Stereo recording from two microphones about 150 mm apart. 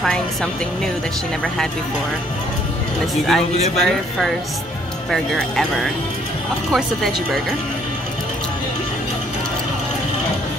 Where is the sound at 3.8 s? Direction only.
Centre (ahead or behind).